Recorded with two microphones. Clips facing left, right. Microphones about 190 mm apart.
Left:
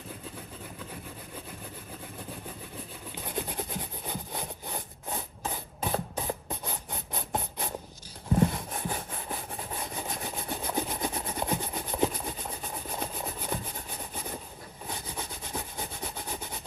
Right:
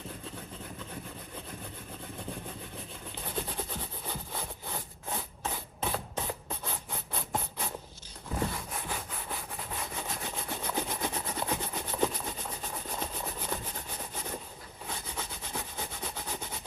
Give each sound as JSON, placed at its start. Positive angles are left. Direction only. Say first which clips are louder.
{"t": 3.3, "sound": "rub", "louder": "left 2 dB", "side_deg": 15}
{"t": 8.4, "sound": "a sound", "louder": "left 3 dB", "side_deg": 25}
{"t": 9.3, "sound": "rub", "louder": "left 3 dB", "side_deg": 20}
{"t": 14.8, "sound": "sawing", "louder": "left 1 dB", "side_deg": 15}